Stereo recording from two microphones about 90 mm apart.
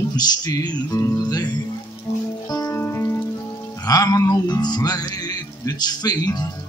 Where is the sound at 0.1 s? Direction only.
50° left (ahead or behind).